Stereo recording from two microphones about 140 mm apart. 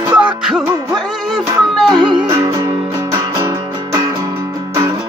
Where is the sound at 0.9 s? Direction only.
30° right (ahead or behind).